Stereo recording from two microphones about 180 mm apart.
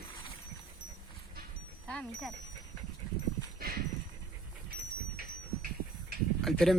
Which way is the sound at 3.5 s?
55° right (ahead or behind).